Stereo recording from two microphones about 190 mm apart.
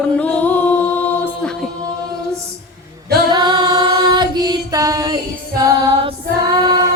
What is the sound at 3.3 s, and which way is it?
Music, 20° right (ahead or behind).